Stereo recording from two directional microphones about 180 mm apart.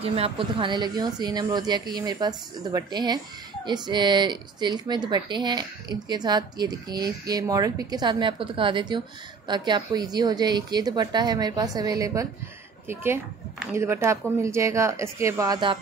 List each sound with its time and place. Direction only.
0.0 s speech: 30° right (ahead or behind)